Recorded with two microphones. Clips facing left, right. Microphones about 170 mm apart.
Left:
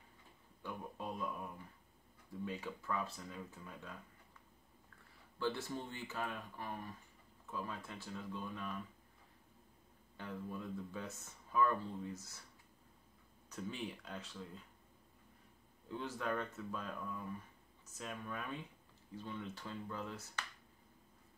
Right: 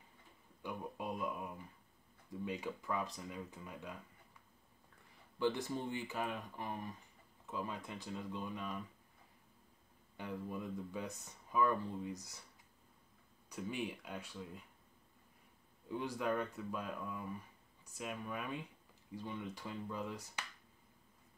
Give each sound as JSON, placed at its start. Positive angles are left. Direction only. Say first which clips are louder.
{"t": 0.6, "sound": "speech", "louder": "right 2 dB", "side_deg": -15}
{"t": 5.4, "sound": "speech", "louder": "right 3 dB", "side_deg": -15}
{"t": 10.1, "sound": "speech", "louder": "right 2 dB", "side_deg": -15}
{"t": 13.5, "sound": "speech", "louder": "right 3 dB", "side_deg": -10}
{"t": 15.9, "sound": "speech", "louder": "right 3 dB", "side_deg": -15}